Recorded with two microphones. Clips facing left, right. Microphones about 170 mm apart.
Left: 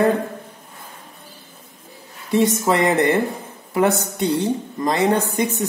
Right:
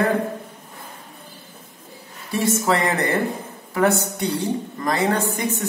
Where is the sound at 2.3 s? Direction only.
20° left (ahead or behind).